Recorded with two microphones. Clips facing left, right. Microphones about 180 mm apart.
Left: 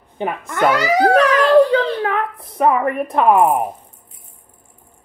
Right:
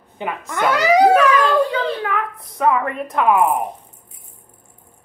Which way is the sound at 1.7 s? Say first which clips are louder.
Left 4 dB; 35° left (ahead or behind).